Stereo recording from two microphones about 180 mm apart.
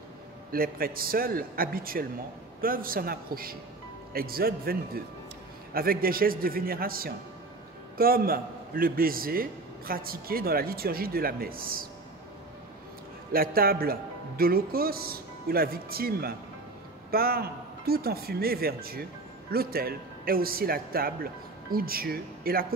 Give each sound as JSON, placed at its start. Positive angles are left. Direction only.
{"t": 0.5, "sound": "a man's voice", "side_deg": -55}
{"t": 13.3, "sound": "a man's voice", "side_deg": -55}